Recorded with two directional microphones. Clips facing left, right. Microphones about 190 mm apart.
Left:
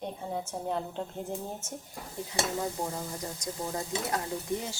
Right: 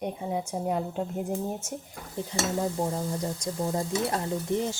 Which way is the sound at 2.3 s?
30° right (ahead or behind).